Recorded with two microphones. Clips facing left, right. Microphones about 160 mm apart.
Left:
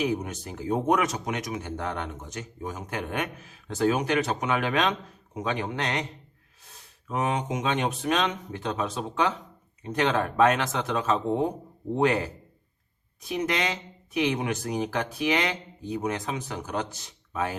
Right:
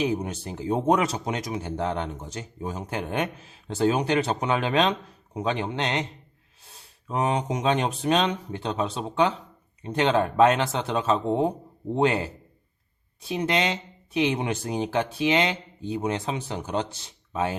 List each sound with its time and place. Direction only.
0.0 s speech: 30° right (ahead or behind)
7.1 s speech: 30° right (ahead or behind)